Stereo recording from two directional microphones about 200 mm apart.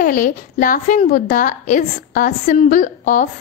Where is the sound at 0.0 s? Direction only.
45° left (ahead or behind).